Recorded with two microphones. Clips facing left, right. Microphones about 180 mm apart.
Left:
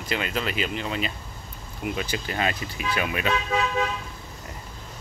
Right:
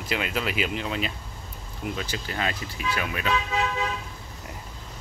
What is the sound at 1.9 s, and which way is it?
Speech, 15° left (ahead or behind).